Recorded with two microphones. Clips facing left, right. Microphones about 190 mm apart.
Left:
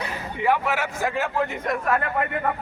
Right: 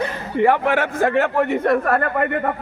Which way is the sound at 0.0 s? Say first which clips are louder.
Right 7 dB; 55° right (ahead or behind).